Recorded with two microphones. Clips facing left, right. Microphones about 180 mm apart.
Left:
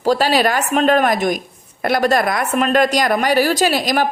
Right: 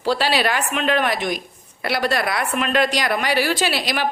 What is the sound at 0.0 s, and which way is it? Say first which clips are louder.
A woman's voice: left 5 dB; 45° left (ahead or behind).